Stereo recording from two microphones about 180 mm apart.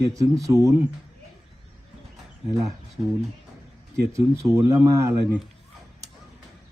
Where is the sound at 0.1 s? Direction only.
20° right (ahead or behind).